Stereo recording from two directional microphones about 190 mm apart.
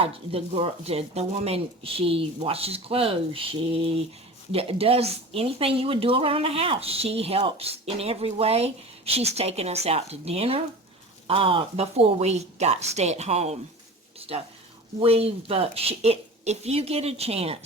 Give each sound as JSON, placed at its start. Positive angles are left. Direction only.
{"t": 0.0, "sound": "a woman's voice", "side_deg": -30}
{"t": 14.2, "sound": "a sound", "side_deg": -30}
{"t": 14.9, "sound": "a woman's voice", "side_deg": -30}